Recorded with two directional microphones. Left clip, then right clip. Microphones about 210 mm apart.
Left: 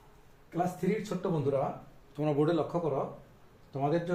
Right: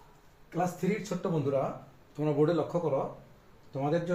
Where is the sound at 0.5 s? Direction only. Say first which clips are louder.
Even; 10° left (ahead or behind).